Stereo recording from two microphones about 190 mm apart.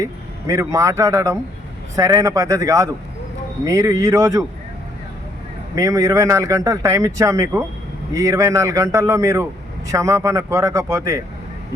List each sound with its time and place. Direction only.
0.0 s a man's voice: 15° right (ahead or behind)
5.7 s a man's voice: 15° right (ahead or behind)